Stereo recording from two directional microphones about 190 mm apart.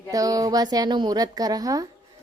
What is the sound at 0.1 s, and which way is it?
A woman's voice, 20° right (ahead or behind).